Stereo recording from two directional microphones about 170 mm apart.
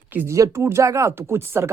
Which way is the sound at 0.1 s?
15° right (ahead or behind).